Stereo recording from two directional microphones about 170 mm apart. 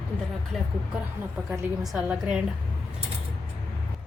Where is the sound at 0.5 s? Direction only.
Centre (ahead or behind).